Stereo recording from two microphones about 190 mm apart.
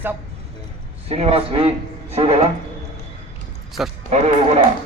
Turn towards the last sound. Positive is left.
turn(degrees=-35)  # may be behind; listen again after turning